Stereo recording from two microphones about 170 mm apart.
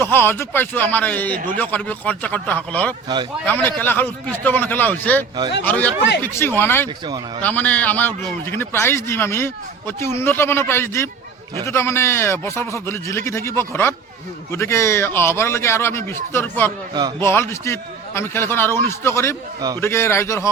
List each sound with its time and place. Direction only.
0.0 s a man's voice: 15° left (ahead or behind)
6.8 s speech: 25° right (ahead or behind)
7.4 s a man's voice: 10° left (ahead or behind)